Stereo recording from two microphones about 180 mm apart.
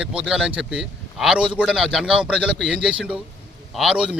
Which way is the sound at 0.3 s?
5° right (ahead or behind).